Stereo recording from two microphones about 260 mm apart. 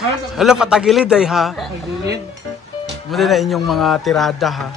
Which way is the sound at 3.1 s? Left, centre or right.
Centre.